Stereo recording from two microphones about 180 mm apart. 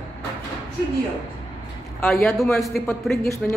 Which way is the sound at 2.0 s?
Centre (ahead or behind).